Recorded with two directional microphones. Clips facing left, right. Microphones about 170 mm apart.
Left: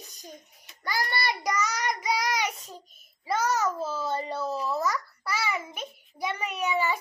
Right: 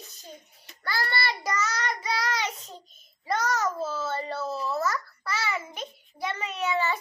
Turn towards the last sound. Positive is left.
turn(degrees=10)  # may be behind; listen again after turning